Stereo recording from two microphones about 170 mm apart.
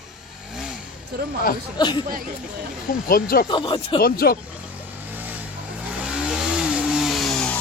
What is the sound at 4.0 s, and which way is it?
Speech, 65° left (ahead or behind).